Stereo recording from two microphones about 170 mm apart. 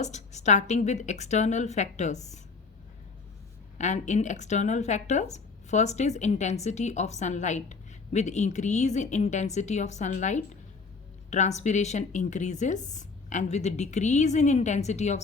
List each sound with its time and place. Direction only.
0.0 s a woman's voice: 45° left (ahead or behind)
3.8 s a woman's voice: 45° left (ahead or behind)